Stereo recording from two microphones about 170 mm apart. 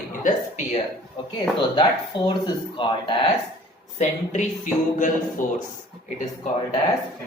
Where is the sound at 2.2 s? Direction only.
30° left (ahead or behind).